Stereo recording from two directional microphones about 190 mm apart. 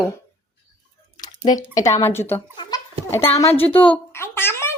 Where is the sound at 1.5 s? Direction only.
20° left (ahead or behind).